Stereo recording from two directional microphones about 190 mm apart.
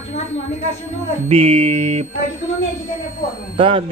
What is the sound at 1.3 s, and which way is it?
Music, 30° right (ahead or behind).